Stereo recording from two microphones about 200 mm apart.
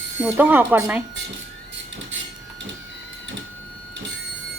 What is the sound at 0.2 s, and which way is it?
Speech, 10° right (ahead or behind).